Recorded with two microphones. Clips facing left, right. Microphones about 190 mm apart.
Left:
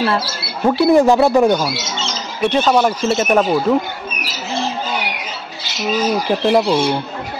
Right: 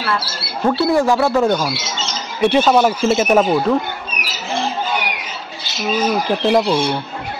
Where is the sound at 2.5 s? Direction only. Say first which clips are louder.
Even; 5° right (ahead or behind).